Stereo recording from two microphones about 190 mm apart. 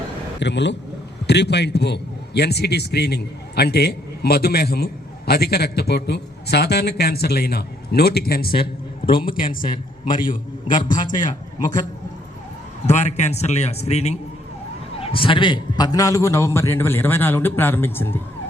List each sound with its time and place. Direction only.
0.3 s a man's voice: 65° left (ahead or behind)
9.0 s a man's voice: 25° left (ahead or behind)
10.8 s a man's voice: 45° left (ahead or behind)
12.9 s a man's voice: 40° left (ahead or behind); by 18.2 s 10° left (ahead or behind)